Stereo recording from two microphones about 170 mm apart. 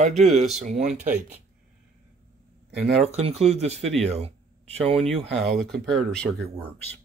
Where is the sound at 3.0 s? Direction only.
40° right (ahead or behind).